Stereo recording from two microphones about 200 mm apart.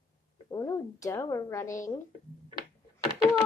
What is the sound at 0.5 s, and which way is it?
A woman's voice, 15° left (ahead or behind).